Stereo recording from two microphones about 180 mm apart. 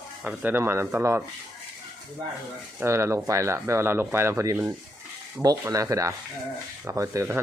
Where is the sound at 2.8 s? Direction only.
15° right (ahead or behind).